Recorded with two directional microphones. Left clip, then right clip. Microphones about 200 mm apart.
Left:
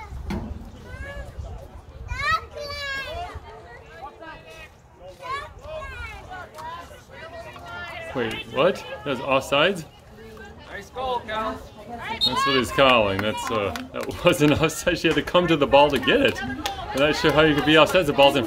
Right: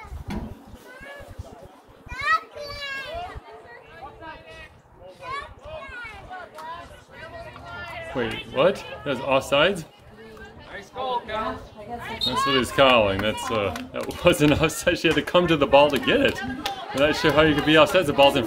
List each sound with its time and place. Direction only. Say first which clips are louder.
2.0 s children playing: right 1 dB; 40° left (ahead or behind)
5.3 s a sound: left 2 dB; 45° left (ahead or behind)
7.7 s run: left 1 dB; 25° left (ahead or behind)
8.5 s speech: right 1 dB; 5° left (ahead or behind)
10.7 s a sound: even; 25° left (ahead or behind)
12.0 s children playing: left 5 dB; 35° left (ahead or behind)
12.4 s speech: right 1 dB; 5° left (ahead or behind)
16.3 s chatter: left 1 dB; 30° left (ahead or behind)
17.0 s speech: even; 5° left (ahead or behind)